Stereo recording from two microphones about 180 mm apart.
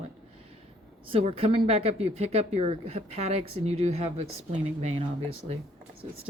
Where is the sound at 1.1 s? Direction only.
30° right (ahead or behind).